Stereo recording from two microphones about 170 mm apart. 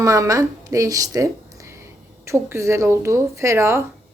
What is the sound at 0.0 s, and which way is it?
A woman's voice, 20° right (ahead or behind).